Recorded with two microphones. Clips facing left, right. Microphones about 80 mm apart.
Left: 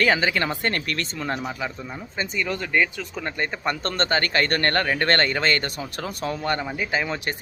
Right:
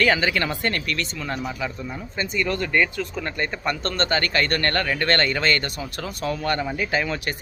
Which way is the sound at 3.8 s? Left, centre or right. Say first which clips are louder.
Even; left.